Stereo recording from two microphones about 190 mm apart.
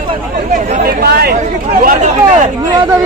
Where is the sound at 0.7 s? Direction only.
50° right (ahead or behind).